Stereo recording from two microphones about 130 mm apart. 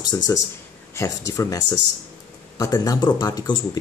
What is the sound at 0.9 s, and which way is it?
Speech, 20° left (ahead or behind).